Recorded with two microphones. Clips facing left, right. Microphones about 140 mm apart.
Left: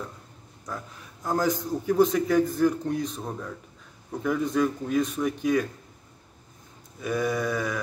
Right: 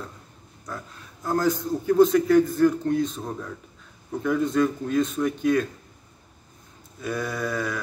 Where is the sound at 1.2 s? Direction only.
15° left (ahead or behind).